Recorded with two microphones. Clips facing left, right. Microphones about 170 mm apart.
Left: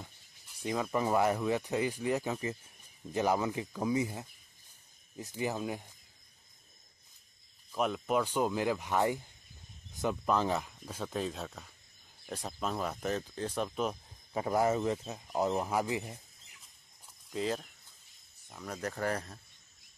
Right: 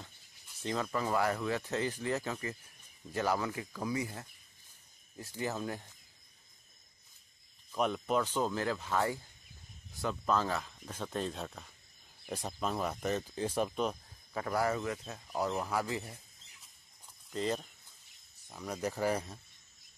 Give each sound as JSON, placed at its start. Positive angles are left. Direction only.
{"t": 0.6, "sound": "speech", "side_deg": 10}
{"t": 7.7, "sound": "speech", "side_deg": 5}
{"t": 14.3, "sound": "speech", "side_deg": 20}
{"t": 17.3, "sound": "speech", "side_deg": 5}